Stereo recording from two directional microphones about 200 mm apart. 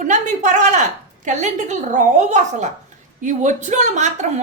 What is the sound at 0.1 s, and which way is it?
A woman's voice, 35° right (ahead or behind).